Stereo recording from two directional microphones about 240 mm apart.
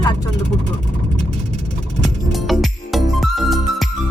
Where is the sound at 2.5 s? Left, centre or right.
Centre.